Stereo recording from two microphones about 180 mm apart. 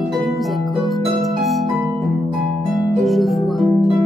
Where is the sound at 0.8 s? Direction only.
Centre (ahead or behind).